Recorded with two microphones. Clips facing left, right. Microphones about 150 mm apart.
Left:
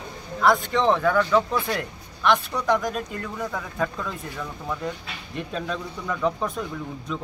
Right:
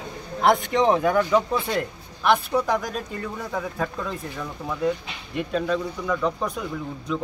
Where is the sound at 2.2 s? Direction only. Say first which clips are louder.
Right 2 dB; 5° right (ahead or behind).